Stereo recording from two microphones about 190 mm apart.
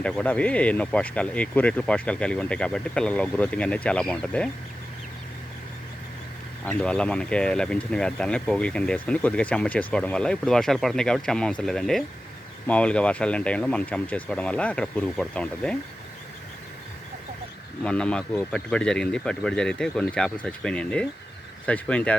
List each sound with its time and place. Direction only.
0.0 s speech: 5° left (ahead or behind)
6.7 s speech: 5° left (ahead or behind)
17.8 s speech: 5° left (ahead or behind)